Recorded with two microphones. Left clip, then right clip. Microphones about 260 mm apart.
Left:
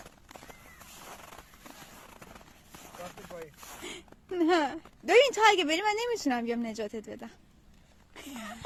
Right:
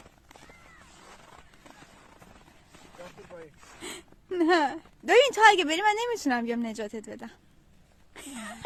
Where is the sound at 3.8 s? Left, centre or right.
Right.